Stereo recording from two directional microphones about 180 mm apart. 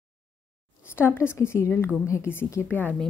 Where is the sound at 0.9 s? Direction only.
15° left (ahead or behind).